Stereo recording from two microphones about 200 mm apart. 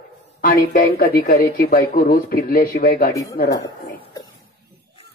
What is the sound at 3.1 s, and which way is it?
Speech, 15° left (ahead or behind).